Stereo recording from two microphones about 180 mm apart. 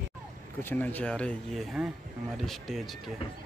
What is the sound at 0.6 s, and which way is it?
Speech, 10° left (ahead or behind).